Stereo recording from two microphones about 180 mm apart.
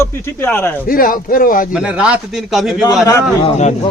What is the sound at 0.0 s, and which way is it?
Speech, 10° left (ahead or behind).